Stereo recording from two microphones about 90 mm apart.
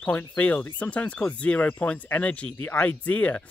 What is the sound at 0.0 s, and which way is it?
Speech, 20° left (ahead or behind).